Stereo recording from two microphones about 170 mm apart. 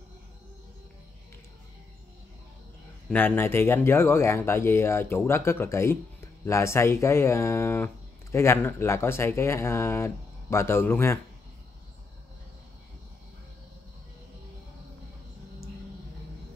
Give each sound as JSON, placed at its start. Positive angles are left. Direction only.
{"t": 3.1, "sound": "speech", "side_deg": 10}